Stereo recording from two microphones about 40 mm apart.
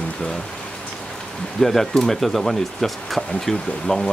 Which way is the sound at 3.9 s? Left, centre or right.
Left.